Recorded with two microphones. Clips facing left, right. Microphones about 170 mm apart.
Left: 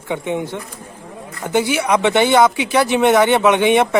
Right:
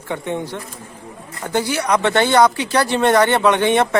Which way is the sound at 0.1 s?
15° left (ahead or behind).